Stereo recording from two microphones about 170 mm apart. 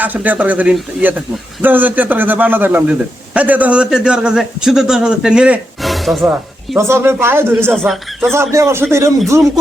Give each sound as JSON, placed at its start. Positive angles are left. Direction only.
{"t": 0.0, "sound": "a man's voice", "side_deg": -10}
{"t": 6.7, "sound": "a man's voice", "side_deg": -15}
{"t": 7.7, "sound": "a man's voice", "side_deg": 0}
{"t": 8.3, "sound": "a man's voice", "side_deg": -15}